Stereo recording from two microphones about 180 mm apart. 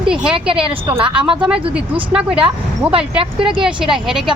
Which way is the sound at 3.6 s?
5° right (ahead or behind).